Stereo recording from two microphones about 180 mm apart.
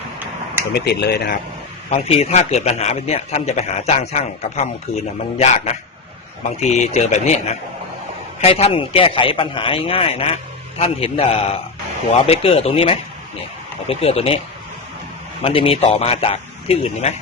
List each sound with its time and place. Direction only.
0.7 s speech: 65° left (ahead or behind)
1.9 s a man's voice: 35° left (ahead or behind)
15.4 s a man's voice: 30° left (ahead or behind)